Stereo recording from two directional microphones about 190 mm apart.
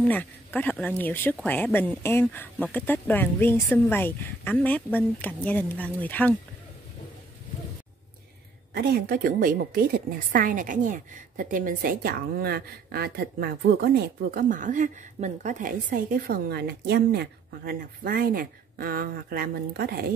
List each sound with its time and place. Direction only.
0.0 s a woman's voice: 10° left (ahead or behind)
8.7 s a woman's voice: 55° right (ahead or behind)